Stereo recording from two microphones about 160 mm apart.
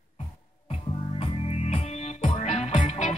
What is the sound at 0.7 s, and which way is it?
Music, 40° left (ahead or behind).